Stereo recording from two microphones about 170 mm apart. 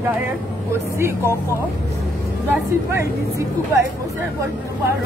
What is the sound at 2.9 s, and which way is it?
Speech, 15° right (ahead or behind).